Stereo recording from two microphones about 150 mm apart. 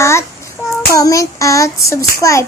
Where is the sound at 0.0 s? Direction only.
20° left (ahead or behind).